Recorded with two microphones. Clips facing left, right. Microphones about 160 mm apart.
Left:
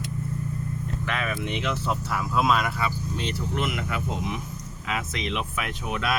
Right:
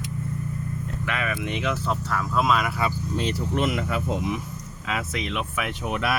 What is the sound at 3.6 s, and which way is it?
Speech, 35° right (ahead or behind).